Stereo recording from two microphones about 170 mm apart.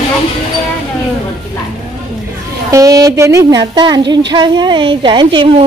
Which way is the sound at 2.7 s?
20° right (ahead or behind).